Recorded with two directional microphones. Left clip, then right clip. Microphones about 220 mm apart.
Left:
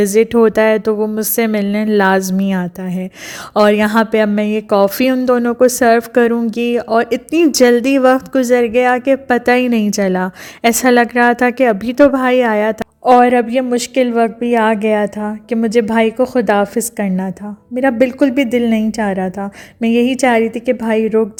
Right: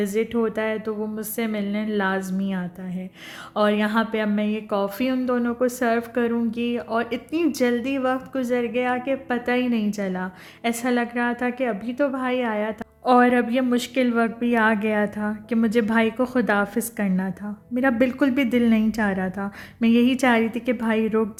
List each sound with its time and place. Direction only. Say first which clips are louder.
0.0 s speech: left 13 dB; 40° left (ahead or behind)
13.1 s a woman's voice: left 9 dB; 20° left (ahead or behind)